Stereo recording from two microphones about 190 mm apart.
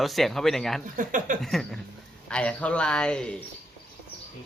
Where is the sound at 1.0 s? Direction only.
45° right (ahead or behind).